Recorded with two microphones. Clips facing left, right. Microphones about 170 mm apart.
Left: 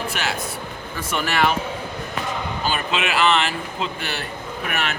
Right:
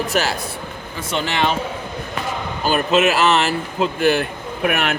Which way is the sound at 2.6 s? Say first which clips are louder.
Right 9 dB; 45° right (ahead or behind).